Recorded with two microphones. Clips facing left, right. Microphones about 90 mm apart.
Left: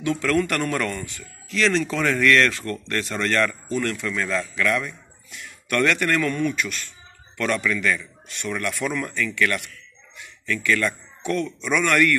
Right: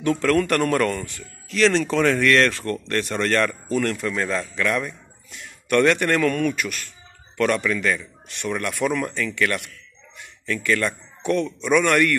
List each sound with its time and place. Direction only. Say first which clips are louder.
0.0 s a man's voice: right 2 dB; 45° right (ahead or behind)
4.1 s a man's voice: right 1 dB; 30° right (ahead or behind); by 9.1 s 50° right (ahead or behind)
9.1 s speech: even; 40° right (ahead or behind)